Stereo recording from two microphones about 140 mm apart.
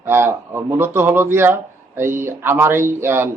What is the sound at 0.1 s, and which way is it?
A man's voice, 20° right (ahead or behind).